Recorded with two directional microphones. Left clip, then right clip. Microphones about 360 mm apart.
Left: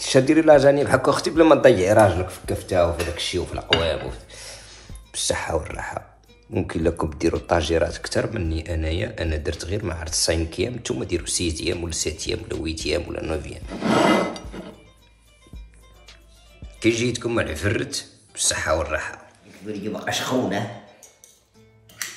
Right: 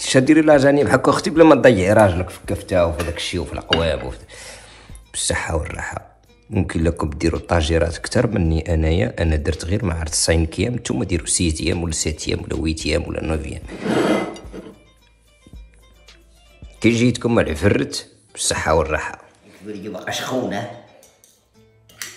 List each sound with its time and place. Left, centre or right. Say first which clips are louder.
0.0 s a man's voice: right 2 dB; right
16.8 s speech: right 4 dB; centre
19.7 s speech: even; centre